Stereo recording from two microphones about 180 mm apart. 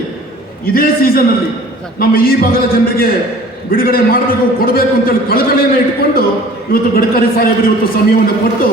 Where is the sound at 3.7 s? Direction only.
55° left (ahead or behind).